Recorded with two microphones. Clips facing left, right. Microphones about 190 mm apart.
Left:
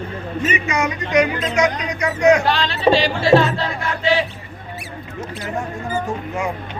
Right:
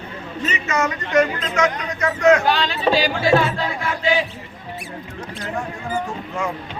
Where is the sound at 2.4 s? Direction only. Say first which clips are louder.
Left 2 dB; centre (ahead or behind).